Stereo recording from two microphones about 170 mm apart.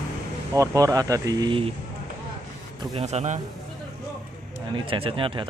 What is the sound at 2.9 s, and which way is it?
Speech, 40° right (ahead or behind).